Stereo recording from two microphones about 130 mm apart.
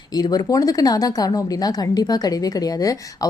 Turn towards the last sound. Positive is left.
turn(degrees=30)  # may be behind; listen again after turning